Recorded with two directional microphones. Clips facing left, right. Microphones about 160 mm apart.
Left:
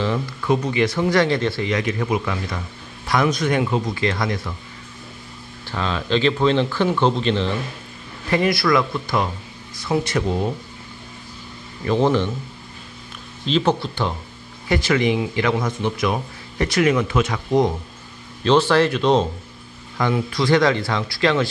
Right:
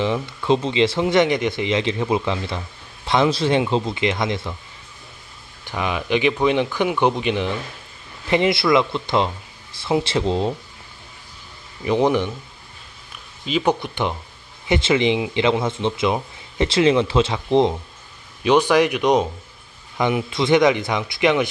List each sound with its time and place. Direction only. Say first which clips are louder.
0.0 s speech: right 1 dB; 20° right (ahead or behind)
5.7 s speech: even; 15° right (ahead or behind)
11.8 s speech: even; 15° right (ahead or behind)
13.5 s speech: left 1 dB; 10° right (ahead or behind); by 17.7 s 25° right (ahead or behind)
18.4 s speech: even; 15° right (ahead or behind)